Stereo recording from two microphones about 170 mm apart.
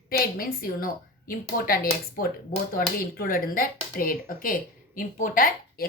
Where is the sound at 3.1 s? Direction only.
55° left (ahead or behind).